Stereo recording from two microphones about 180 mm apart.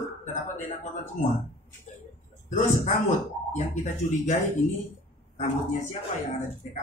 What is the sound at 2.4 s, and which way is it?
Speech, 40° left (ahead or behind).